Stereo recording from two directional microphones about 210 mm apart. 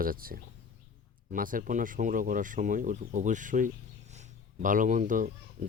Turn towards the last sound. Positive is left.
turn(degrees=-40)  # may be behind; listen again after turning